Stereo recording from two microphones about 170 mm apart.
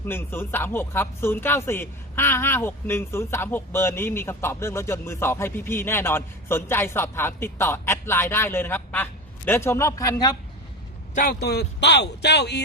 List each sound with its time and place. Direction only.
0.0 s speech: 10° left (ahead or behind)
11.1 s speech: 60° left (ahead or behind); by 12.6 s 80° left